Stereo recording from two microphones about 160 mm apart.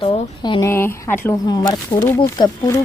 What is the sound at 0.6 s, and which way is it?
Speech, 15° left (ahead or behind).